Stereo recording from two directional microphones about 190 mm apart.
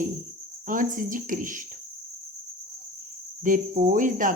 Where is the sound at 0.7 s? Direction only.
45° right (ahead or behind).